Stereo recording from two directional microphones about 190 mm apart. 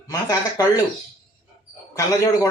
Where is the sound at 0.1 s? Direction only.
20° left (ahead or behind).